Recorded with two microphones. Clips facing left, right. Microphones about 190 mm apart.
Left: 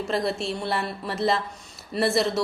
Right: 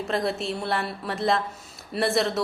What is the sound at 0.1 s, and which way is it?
Speech, centre (ahead or behind).